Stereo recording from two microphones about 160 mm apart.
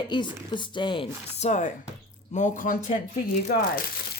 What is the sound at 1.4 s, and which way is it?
A woman's voice, 50° left (ahead or behind).